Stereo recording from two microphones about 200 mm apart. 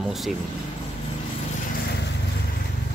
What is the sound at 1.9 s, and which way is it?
Vehicle, 55° left (ahead or behind).